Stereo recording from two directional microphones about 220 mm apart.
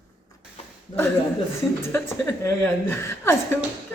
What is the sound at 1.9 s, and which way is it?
A woman's voice, 10° left (ahead or behind).